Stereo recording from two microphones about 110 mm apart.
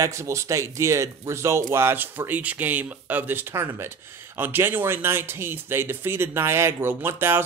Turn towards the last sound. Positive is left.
turn(degrees=-20)  # may be behind; listen again after turning